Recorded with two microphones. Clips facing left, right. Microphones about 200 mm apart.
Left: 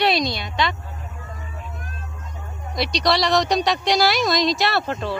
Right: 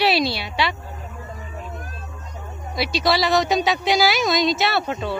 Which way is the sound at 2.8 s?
5° right (ahead or behind).